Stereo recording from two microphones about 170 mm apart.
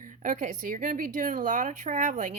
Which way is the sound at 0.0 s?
50° right (ahead or behind).